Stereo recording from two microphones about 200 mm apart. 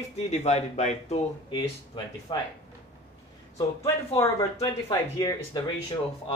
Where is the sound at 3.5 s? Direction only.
15° left (ahead or behind).